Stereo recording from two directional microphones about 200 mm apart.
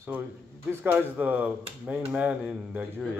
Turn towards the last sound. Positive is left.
turn(degrees=-5)  # may be behind; listen again after turning